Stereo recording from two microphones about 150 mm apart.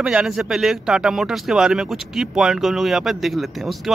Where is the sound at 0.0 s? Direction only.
5° right (ahead or behind).